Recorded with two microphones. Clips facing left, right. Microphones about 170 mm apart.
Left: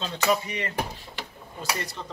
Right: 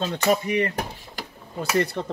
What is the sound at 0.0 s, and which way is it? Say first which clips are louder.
Speech: right 3 dB; 50° right (ahead or behind).